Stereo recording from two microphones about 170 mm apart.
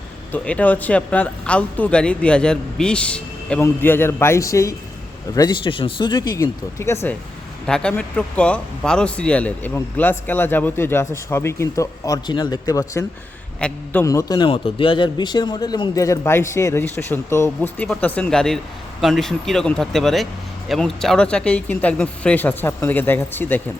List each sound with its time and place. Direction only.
0.3 s speech: 10° left (ahead or behind)
13.6 s speech: 5° left (ahead or behind)
14.0 s speech: 20° left (ahead or behind)